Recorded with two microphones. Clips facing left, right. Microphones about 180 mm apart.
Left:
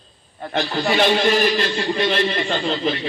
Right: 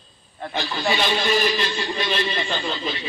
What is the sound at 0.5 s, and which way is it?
A man's voice, 60° left (ahead or behind).